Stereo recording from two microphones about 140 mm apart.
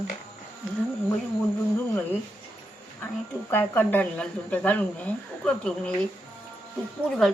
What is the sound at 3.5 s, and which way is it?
A woman's voice, 15° left (ahead or behind).